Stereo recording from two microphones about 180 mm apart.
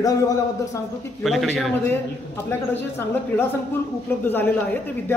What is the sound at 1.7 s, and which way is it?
Speech, 15° left (ahead or behind).